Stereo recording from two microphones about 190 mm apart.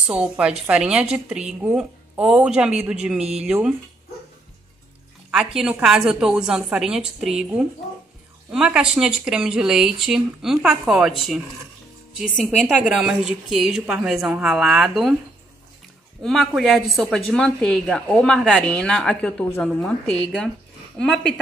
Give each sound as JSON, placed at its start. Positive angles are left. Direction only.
{"t": 0.0, "sound": "speech", "side_deg": -5}
{"t": 5.3, "sound": "speech", "side_deg": 0}
{"t": 16.2, "sound": "speech", "side_deg": 0}